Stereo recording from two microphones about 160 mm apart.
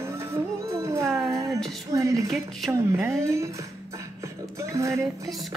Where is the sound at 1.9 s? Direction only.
20° right (ahead or behind).